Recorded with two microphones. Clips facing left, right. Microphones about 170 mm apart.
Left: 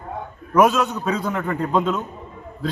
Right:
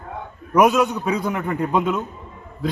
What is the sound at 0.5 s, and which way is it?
Speech, 10° right (ahead or behind).